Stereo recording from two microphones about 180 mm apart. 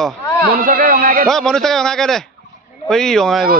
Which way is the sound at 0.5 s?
50° right (ahead or behind).